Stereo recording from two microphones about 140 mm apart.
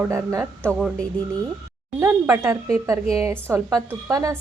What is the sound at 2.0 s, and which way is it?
Speech, 20° right (ahead or behind).